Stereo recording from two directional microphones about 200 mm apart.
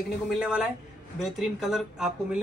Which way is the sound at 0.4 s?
5° right (ahead or behind).